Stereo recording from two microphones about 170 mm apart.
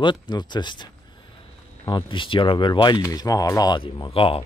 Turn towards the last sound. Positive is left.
turn(degrees=30)  # may be behind; listen again after turning